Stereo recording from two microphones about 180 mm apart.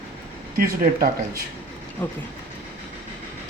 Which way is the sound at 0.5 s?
55° right (ahead or behind).